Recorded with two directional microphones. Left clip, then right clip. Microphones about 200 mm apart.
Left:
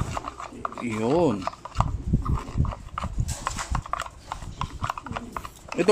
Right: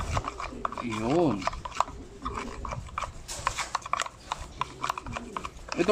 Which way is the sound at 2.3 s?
Centre (ahead or behind).